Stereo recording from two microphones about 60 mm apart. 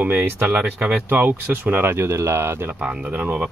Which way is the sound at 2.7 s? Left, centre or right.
Right.